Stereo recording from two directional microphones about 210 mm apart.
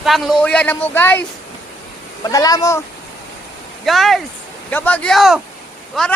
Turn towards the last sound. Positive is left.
turn(degrees=0)  # may be behind; listen again after turning